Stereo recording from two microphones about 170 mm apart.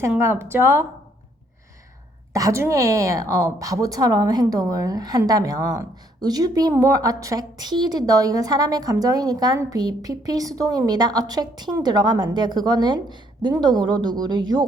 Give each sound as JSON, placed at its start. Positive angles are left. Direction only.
{"t": 0.1, "sound": "a woman's voice", "side_deg": -15}
{"t": 2.3, "sound": "a woman's voice", "side_deg": -20}